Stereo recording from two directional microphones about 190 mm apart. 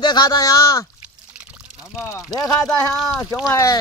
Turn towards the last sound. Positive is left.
turn(degrees=15)  # may be behind; listen again after turning